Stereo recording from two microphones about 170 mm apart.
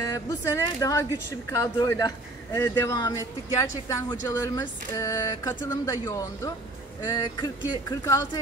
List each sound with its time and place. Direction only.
0.0 s a man's voice: 20° left (ahead or behind)